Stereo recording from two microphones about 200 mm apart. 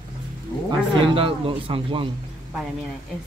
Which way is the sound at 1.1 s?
25° right (ahead or behind).